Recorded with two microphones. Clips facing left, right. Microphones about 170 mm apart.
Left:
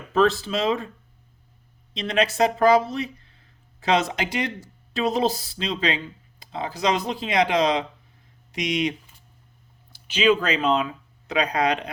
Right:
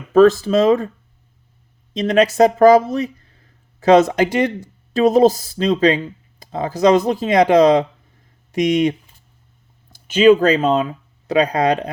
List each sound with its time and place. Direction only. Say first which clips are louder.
0.1 s speech: right 9 dB; 45° right (ahead or behind)
1.9 s speech: right 8 dB; 40° right (ahead or behind)